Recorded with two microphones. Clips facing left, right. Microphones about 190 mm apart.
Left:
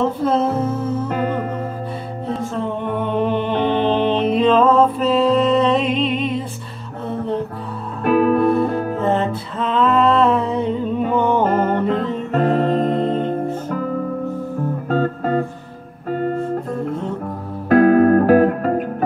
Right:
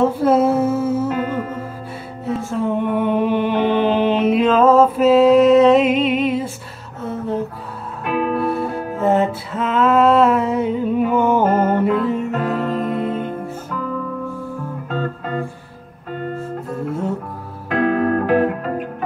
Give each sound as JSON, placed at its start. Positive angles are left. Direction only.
{"t": 0.0, "sound": "music", "side_deg": -10}
{"t": 1.0, "sound": "music", "side_deg": 50}
{"t": 2.5, "sound": "music", "side_deg": -10}
{"t": 8.0, "sound": "music", "side_deg": 45}
{"t": 8.9, "sound": "music", "side_deg": -5}
{"t": 12.4, "sound": "music", "side_deg": 30}
{"t": 13.7, "sound": "music", "side_deg": 45}